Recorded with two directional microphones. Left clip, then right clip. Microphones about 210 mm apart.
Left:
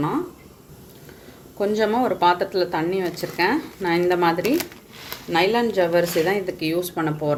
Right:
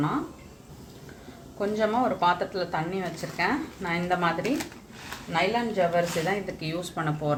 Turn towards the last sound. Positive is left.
turn(degrees=30)  # may be behind; listen again after turning